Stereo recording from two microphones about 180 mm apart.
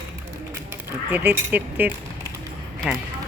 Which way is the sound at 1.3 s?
10° right (ahead or behind).